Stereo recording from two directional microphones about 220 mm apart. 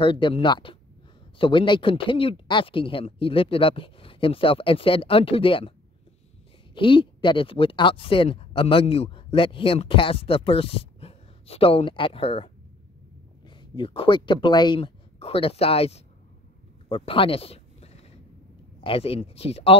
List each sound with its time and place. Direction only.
0.0 s speech: 25° left (ahead or behind)
6.7 s speech: 20° left (ahead or behind)
13.6 s speech: 20° left (ahead or behind)
16.9 s a sound: 25° left (ahead or behind)
18.8 s speech: 25° left (ahead or behind)